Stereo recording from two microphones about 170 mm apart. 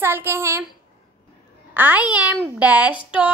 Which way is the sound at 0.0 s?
15° right (ahead or behind).